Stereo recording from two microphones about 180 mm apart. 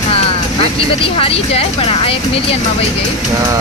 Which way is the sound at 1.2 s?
35° left (ahead or behind).